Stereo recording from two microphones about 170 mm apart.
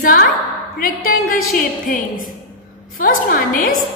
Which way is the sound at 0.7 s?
60° left (ahead or behind).